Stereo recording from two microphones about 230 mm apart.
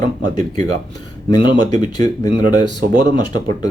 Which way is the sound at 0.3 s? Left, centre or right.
Centre.